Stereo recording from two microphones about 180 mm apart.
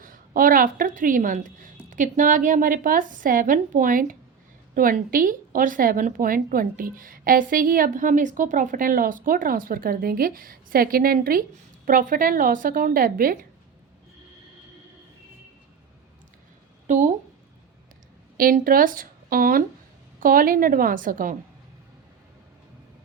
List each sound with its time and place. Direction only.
0.0 s speech: 50° right (ahead or behind)
16.8 s a woman's voice: 40° right (ahead or behind)
18.3 s a woman's voice: 50° right (ahead or behind)